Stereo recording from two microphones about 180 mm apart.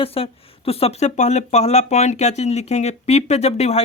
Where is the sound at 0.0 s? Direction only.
30° left (ahead or behind).